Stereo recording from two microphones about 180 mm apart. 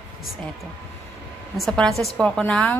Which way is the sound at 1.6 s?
Centre (ahead or behind).